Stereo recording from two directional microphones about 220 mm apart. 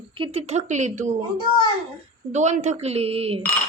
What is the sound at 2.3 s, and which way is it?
Speech, 30° right (ahead or behind).